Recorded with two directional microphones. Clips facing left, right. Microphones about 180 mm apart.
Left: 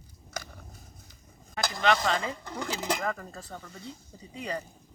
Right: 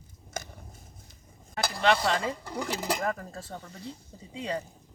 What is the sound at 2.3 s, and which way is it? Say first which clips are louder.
Speech: right 2 dB; 10° right (ahead or behind).